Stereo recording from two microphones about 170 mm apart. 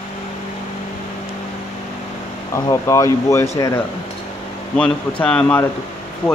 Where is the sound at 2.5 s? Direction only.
20° left (ahead or behind).